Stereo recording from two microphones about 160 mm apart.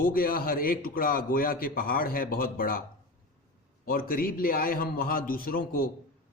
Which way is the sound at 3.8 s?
65° left (ahead or behind).